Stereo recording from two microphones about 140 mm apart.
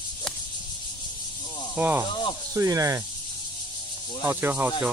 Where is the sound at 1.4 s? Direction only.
35° left (ahead or behind).